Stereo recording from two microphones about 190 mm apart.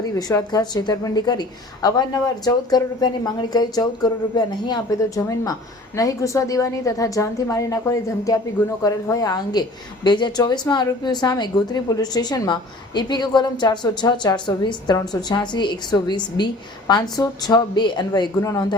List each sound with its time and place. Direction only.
0.2 s a woman's voice: 20° left (ahead or behind)